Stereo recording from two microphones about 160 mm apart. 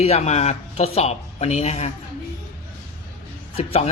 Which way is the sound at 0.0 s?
40° left (ahead or behind).